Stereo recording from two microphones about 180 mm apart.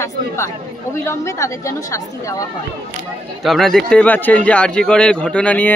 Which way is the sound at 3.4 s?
Centre (ahead or behind).